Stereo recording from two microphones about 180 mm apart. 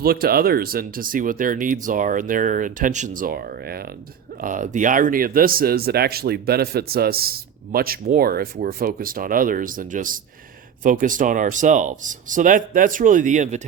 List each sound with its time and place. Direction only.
0.0 s speech: 55° right (ahead or behind)
4.4 s speech: 45° right (ahead or behind)